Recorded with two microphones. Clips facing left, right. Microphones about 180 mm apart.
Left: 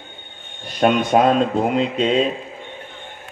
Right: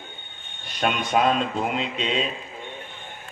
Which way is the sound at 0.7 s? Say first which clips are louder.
Left 7 dB; 50° left (ahead or behind).